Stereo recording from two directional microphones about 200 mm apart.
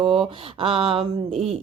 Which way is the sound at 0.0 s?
25° right (ahead or behind).